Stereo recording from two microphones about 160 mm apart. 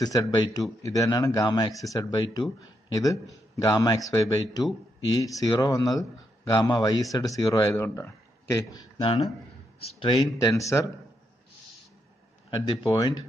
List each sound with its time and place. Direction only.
0.0 s a man's voice: 25° left (ahead or behind)
9.0 s speech: 35° left (ahead or behind); by 10.9 s 20° left (ahead or behind)
12.5 s speech: 25° left (ahead or behind)